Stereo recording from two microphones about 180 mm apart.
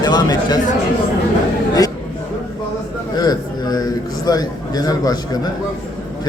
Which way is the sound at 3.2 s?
20° left (ahead or behind).